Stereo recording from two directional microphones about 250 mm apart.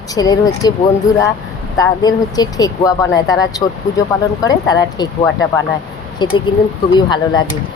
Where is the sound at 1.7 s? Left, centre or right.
Centre.